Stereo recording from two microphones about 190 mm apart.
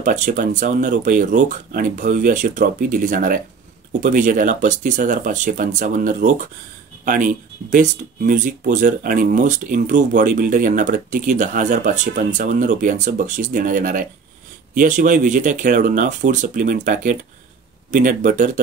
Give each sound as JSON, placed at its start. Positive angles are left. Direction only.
{"t": 0.0, "sound": "speech", "side_deg": -40}